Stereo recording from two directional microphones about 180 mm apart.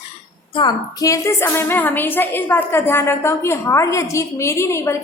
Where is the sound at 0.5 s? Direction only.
25° left (ahead or behind).